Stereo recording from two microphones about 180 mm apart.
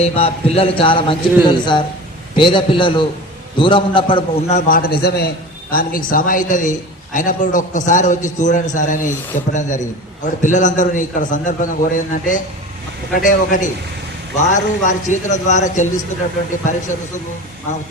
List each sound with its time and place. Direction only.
0.0 s a man's voice: 35° left (ahead or behind)